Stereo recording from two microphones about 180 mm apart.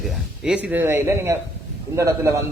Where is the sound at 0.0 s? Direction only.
5° right (ahead or behind).